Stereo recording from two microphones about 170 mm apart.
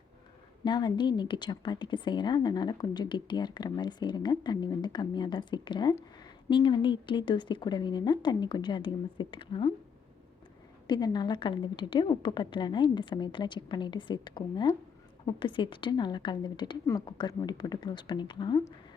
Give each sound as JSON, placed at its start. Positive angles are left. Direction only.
{"t": 0.6, "sound": "a woman's voice", "side_deg": 25}
{"t": 10.8, "sound": "a woman's voice", "side_deg": 25}